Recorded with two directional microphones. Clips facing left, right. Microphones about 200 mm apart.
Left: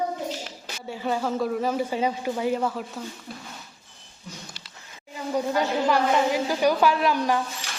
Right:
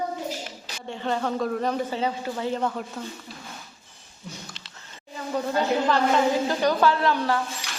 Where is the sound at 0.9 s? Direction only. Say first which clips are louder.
Even; 5° left (ahead or behind).